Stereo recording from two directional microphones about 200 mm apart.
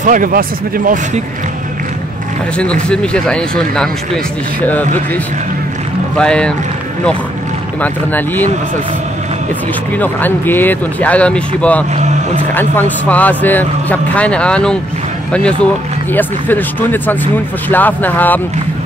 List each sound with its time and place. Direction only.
0.0 s speech: 40° right (ahead or behind)
2.5 s speech: 5° left (ahead or behind)
6.1 s speech: 5° left (ahead or behind)
7.8 s speech: 10° left (ahead or behind)
9.9 s speech: 10° left (ahead or behind)